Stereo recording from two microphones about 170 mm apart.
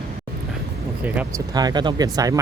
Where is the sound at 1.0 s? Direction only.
10° right (ahead or behind).